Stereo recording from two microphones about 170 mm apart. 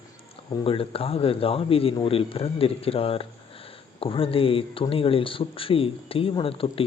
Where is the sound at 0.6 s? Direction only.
35° left (ahead or behind).